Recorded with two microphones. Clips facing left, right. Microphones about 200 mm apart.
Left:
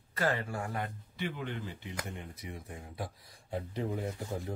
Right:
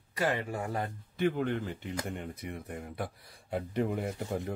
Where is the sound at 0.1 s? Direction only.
15° right (ahead or behind).